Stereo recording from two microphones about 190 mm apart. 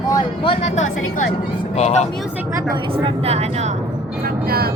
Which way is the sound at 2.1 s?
5° right (ahead or behind).